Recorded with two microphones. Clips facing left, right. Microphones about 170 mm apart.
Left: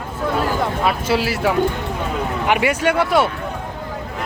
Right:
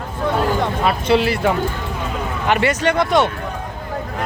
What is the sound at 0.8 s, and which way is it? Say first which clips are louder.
Speech: right 4 dB; 5° left (ahead or behind).